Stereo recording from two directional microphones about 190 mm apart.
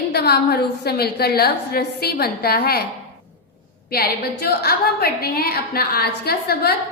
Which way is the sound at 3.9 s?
55° left (ahead or behind).